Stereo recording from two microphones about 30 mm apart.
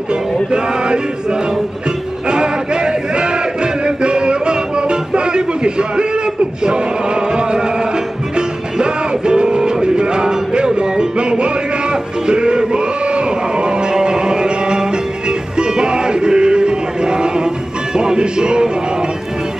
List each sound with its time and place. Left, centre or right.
0.1 s music: right
2.2 s crowd: right
8.4 s music: right